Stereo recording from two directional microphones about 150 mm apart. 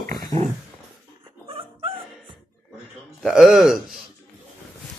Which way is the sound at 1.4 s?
40° right (ahead or behind).